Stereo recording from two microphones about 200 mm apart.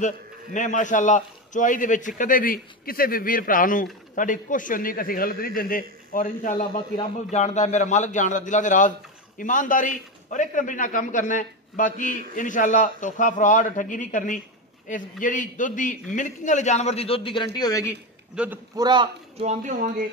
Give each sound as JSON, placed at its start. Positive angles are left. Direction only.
{"t": 0.0, "sound": "a man's voice", "side_deg": 40}
{"t": 18.3, "sound": "a man's voice", "side_deg": -5}
{"t": 18.8, "sound": "a man's voice", "side_deg": -20}
{"t": 19.4, "sound": "speech", "side_deg": -35}